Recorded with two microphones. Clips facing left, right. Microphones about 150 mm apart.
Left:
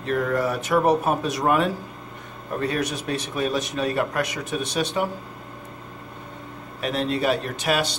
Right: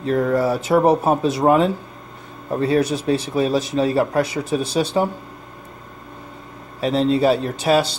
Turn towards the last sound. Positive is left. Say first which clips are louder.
# right 6 dB
turn(degrees=-30)  # may be behind; listen again after turning